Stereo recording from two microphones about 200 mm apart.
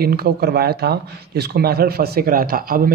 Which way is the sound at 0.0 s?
50° right (ahead or behind).